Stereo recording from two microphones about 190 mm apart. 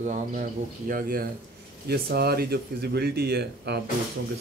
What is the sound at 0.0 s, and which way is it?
Speech, 40° right (ahead or behind).